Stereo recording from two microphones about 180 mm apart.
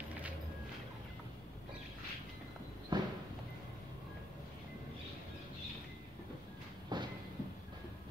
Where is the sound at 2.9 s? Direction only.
25° right (ahead or behind).